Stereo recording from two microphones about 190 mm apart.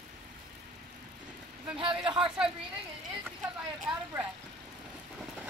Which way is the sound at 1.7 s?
25° right (ahead or behind).